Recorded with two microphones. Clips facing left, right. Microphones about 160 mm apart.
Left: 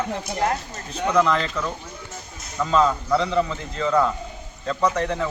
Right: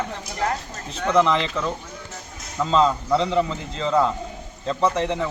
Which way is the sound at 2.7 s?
20° right (ahead or behind).